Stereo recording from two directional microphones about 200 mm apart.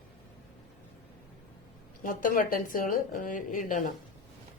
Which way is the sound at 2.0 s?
45° left (ahead or behind).